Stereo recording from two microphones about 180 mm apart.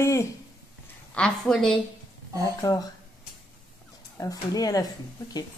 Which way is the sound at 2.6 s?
20° left (ahead or behind).